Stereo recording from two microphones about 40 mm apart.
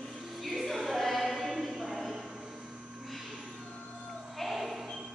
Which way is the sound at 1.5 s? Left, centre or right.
Centre.